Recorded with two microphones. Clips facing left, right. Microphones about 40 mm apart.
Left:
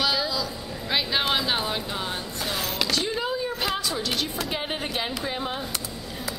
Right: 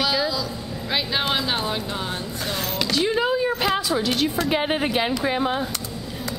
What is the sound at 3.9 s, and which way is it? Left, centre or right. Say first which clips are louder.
Speech: right 6 dB; centre.